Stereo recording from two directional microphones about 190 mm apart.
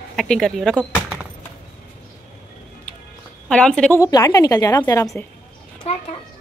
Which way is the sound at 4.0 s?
20° left (ahead or behind).